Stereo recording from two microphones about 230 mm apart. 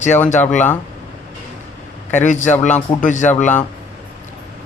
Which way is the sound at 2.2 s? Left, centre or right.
Left.